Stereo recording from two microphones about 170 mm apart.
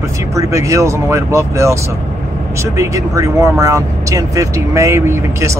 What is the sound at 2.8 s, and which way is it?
Speech, 15° right (ahead or behind).